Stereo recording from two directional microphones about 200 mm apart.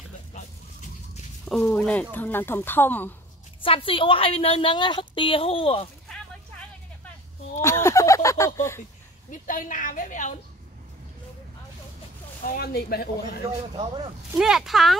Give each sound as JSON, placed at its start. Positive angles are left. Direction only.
{"t": 1.4, "sound": "speech", "side_deg": 5}
{"t": 3.6, "sound": "a woman's voice", "side_deg": 25}
{"t": 7.6, "sound": "a sound", "side_deg": 15}
{"t": 8.5, "sound": "speech", "side_deg": 15}
{"t": 9.3, "sound": "a woman's voice", "side_deg": 40}
{"t": 12.4, "sound": "speech", "side_deg": 50}
{"t": 13.7, "sound": "speech", "side_deg": -20}
{"t": 14.3, "sound": "speech", "side_deg": 0}